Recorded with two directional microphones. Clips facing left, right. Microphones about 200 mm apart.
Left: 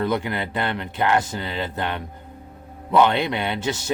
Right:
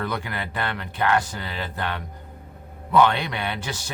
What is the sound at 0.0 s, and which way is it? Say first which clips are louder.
Speech: left 6 dB; 20° left (ahead or behind).